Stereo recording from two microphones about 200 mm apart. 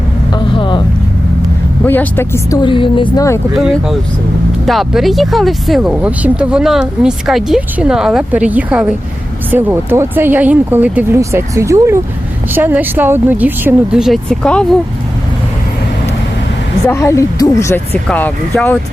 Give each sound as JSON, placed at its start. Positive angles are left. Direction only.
{"t": 0.3, "sound": "vehicle", "side_deg": 25}
{"t": 1.8, "sound": "speech", "side_deg": 10}
{"t": 3.5, "sound": "speech", "side_deg": 0}
{"t": 16.8, "sound": "speech", "side_deg": 15}